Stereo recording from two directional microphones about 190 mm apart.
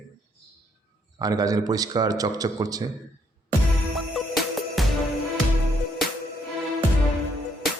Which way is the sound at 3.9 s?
Centre (ahead or behind).